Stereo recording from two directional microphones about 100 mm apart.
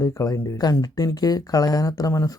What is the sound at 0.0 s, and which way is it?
Speech, 35° left (ahead or behind).